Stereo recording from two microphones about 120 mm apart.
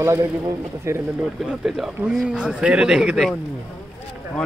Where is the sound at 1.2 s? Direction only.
5° right (ahead or behind).